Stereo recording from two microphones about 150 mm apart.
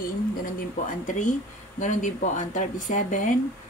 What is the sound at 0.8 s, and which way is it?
Speech, 60° left (ahead or behind).